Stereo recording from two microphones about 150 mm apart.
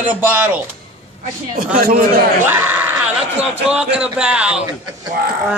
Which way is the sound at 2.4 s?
10° right (ahead or behind).